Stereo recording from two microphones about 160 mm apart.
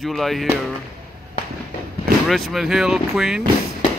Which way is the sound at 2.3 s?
Centre (ahead or behind).